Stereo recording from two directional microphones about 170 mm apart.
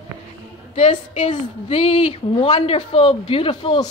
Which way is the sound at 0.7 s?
45° left (ahead or behind).